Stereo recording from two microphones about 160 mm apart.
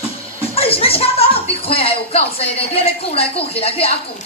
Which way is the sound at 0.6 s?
35° left (ahead or behind).